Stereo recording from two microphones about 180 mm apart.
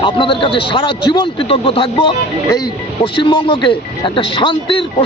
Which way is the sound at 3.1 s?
25° left (ahead or behind).